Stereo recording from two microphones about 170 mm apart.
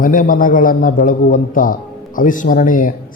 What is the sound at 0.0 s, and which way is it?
A man's voice, 55° left (ahead or behind).